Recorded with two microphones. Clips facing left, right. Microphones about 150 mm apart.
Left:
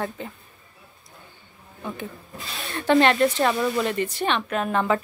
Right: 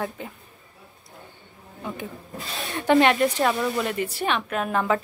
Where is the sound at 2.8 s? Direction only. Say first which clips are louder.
Even; 10° right (ahead or behind).